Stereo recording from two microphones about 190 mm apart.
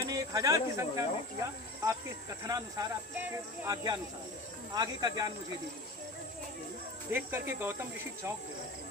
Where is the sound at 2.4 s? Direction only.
20° right (ahead or behind).